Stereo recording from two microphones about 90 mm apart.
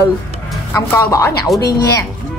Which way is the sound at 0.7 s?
35° left (ahead or behind).